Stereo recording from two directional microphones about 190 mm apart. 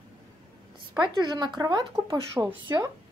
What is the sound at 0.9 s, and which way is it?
A woman's voice, 25° right (ahead or behind).